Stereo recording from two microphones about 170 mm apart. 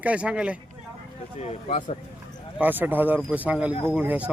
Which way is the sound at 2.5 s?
10° right (ahead or behind).